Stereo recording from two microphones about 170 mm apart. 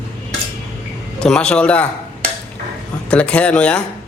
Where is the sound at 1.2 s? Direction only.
5° left (ahead or behind).